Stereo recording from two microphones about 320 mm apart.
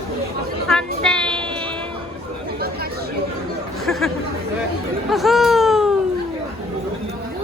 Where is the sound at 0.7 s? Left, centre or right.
Centre.